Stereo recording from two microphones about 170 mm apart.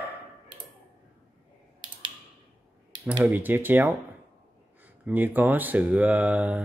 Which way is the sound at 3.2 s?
10° right (ahead or behind).